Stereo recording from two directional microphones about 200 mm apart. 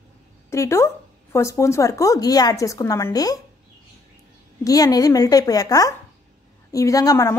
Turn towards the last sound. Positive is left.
turn(degrees=15)  # may be behind; listen again after turning